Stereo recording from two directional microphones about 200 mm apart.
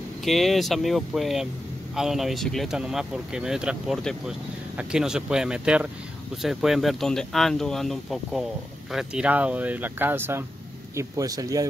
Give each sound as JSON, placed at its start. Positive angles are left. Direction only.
{"t": 0.2, "sound": "speech", "side_deg": 0}